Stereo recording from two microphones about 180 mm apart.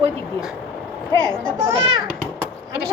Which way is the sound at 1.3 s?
20° right (ahead or behind).